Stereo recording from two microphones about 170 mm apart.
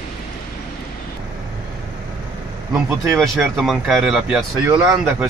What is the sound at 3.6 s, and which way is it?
Speech, centre (ahead or behind).